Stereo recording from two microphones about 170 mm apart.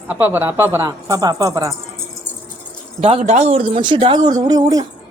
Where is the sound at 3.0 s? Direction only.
40° right (ahead or behind).